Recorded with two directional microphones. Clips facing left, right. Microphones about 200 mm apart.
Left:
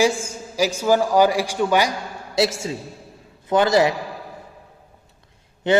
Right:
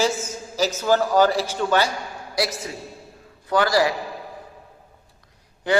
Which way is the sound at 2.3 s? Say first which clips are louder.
Left 5 dB; 25° left (ahead or behind).